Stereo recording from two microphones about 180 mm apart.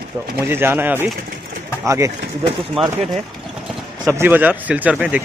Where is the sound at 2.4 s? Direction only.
30° right (ahead or behind).